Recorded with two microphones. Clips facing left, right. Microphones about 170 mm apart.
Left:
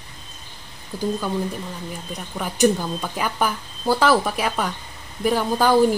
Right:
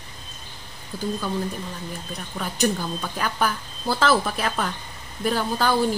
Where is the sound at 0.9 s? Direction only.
15° left (ahead or behind).